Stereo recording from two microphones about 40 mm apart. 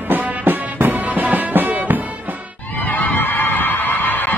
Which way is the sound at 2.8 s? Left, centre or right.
Left.